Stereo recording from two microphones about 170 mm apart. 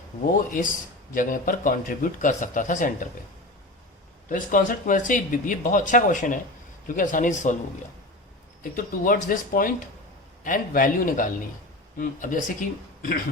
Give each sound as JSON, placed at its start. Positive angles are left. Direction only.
{"t": 0.3, "sound": "speech", "side_deg": 55}
{"t": 4.3, "sound": "speech", "side_deg": 55}
{"t": 8.7, "sound": "speech", "side_deg": 55}